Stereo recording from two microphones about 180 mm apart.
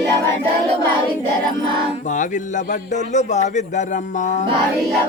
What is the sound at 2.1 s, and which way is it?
A man's voice, 45° left (ahead or behind).